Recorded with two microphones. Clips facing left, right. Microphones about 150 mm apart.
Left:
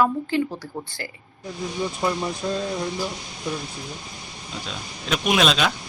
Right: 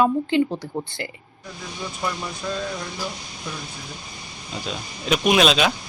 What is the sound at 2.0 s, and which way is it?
Speech, 25° left (ahead or behind).